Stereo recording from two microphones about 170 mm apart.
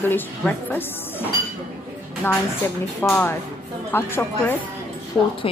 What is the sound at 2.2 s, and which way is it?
A woman's voice, 15° left (ahead or behind).